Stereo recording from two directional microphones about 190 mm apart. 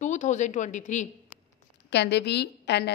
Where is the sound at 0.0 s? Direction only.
40° left (ahead or behind).